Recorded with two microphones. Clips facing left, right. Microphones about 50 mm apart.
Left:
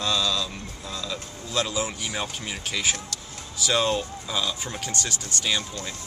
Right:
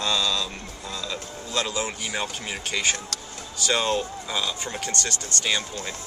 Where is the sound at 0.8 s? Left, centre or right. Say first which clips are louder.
Right 1 dB; centre.